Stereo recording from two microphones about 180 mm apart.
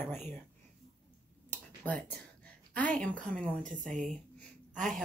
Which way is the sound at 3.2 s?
5° left (ahead or behind).